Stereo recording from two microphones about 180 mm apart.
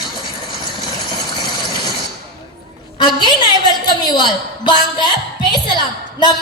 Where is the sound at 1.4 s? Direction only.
25° left (ahead or behind).